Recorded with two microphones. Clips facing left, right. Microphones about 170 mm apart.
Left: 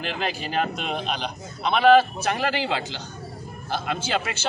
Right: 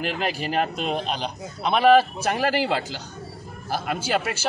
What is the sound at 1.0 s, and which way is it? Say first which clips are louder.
Speech: right 1 dB; 35° right (ahead or behind).